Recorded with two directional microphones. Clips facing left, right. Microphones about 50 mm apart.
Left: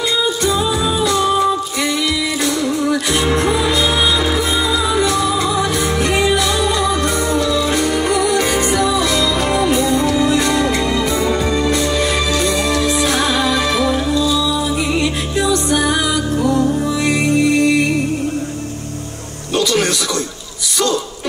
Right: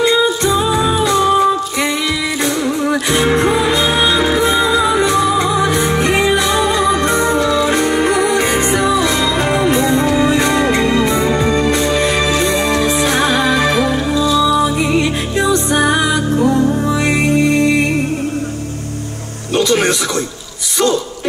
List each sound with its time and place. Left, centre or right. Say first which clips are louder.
0.0 s music: right 4 dB; right
3.3 s music: right 3 dB; right
19.5 s music: right 3 dB; right